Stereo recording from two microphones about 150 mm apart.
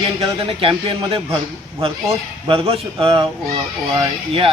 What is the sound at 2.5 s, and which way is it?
A man's voice, 40° right (ahead or behind).